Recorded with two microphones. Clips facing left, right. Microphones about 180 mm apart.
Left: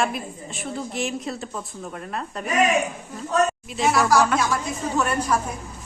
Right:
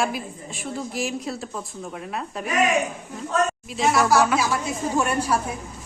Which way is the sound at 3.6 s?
Centre (ahead or behind).